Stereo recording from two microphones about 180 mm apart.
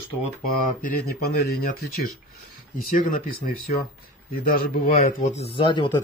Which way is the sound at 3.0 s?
50° left (ahead or behind).